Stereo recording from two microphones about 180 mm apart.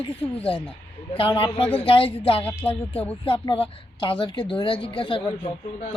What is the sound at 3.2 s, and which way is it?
A woman's voice, 30° left (ahead or behind).